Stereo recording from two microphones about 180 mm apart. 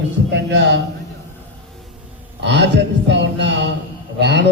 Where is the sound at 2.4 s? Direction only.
70° right (ahead or behind).